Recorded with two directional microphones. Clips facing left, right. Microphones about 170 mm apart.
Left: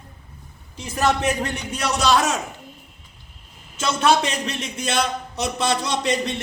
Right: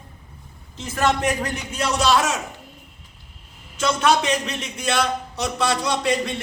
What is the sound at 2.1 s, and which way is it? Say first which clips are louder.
Speech: left 2 dB; 40° left (ahead or behind).